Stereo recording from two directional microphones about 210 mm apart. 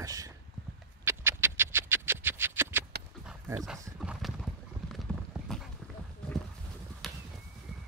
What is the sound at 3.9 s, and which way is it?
Clip-clop, centre (ahead or behind).